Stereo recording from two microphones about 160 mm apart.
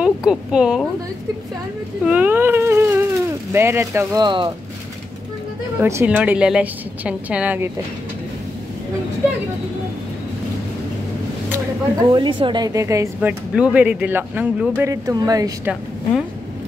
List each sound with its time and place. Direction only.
0.0 s speech: 5° right (ahead or behind)
2.0 s a woman's voice: 10° right (ahead or behind)
4.2 s speech: 30° right (ahead or behind)
5.8 s a woman's voice: 15° right (ahead or behind)
12.1 s a woman's voice: 30° right (ahead or behind); by 14.9 s 10° right (ahead or behind)
14.9 s speech: 20° right (ahead or behind)